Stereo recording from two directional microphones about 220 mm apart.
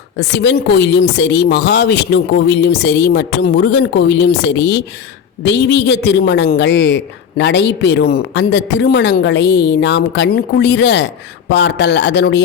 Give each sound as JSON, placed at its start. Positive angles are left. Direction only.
{"t": 0.2, "sound": "a man's voice", "side_deg": 50}